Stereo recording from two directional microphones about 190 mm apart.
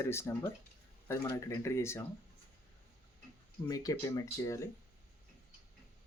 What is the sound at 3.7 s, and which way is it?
Speech, 20° left (ahead or behind).